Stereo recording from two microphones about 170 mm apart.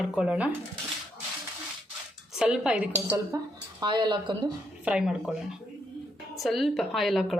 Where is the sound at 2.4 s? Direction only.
5° right (ahead or behind).